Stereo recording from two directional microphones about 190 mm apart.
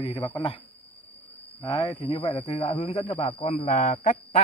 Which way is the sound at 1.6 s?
25° left (ahead or behind).